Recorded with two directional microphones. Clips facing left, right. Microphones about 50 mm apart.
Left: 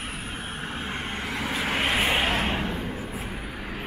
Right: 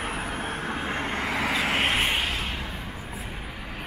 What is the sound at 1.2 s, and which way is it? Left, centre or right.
Vehicle, right.